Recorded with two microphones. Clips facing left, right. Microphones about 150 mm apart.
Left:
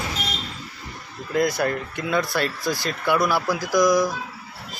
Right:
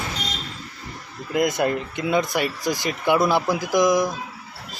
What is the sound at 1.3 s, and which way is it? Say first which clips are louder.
Speech: right 1 dB; 20° right (ahead or behind).